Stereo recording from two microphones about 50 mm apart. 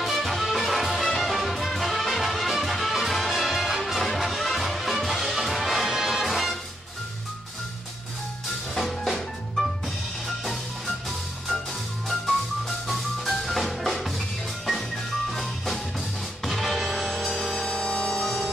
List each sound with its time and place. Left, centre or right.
0.0 s music: centre
8.7 s music: centre
15.3 s music: centre
17.6 s music: left
18.2 s music: centre